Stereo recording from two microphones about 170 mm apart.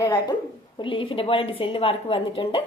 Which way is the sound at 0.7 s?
30° left (ahead or behind).